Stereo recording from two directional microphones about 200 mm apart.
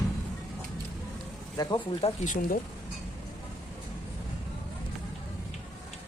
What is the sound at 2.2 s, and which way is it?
Speech, 40° left (ahead or behind).